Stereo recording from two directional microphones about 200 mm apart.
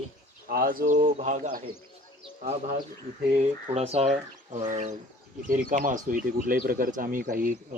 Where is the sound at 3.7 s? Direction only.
30° right (ahead or behind).